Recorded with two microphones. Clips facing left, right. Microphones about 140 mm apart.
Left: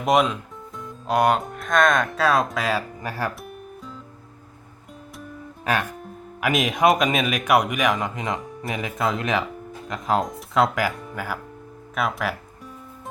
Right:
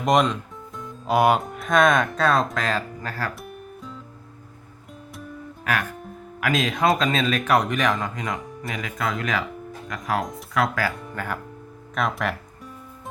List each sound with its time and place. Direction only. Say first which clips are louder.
0.0 s speech: even; 5° left (ahead or behind)
3.4 s music: even; centre (ahead or behind)
6.4 s speech: left 2 dB; 20° left (ahead or behind)
10.9 s speech: even; 5° left (ahead or behind)